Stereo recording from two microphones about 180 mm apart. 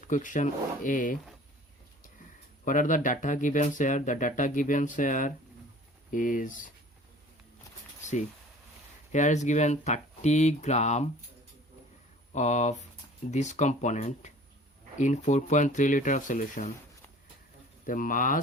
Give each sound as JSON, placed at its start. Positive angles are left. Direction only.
{"t": 0.1, "sound": "speech", "side_deg": 45}
{"t": 2.6, "sound": "speech", "side_deg": 45}
{"t": 9.1, "sound": "speech", "side_deg": 40}
{"t": 12.3, "sound": "speech", "side_deg": 40}
{"t": 17.8, "sound": "speech", "side_deg": 50}